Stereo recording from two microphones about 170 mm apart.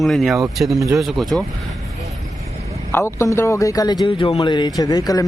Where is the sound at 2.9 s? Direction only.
15° left (ahead or behind).